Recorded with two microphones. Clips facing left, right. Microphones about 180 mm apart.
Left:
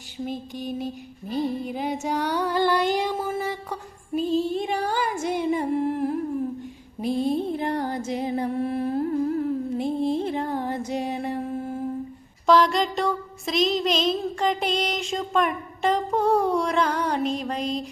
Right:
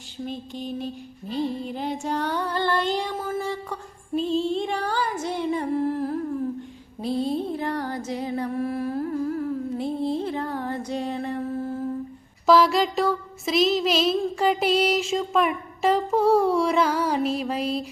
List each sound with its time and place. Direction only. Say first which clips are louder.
0.3 s female singing: left 1 dB; 15° left (ahead or behind)
2.0 s music: left 1 dB; 5° left (ahead or behind)
2.7 s female singing: left 2 dB; 15° left (ahead or behind)
7.4 s music: left 2 dB; 20° left (ahead or behind)
12.5 s music: right 1 dB; 5° right (ahead or behind)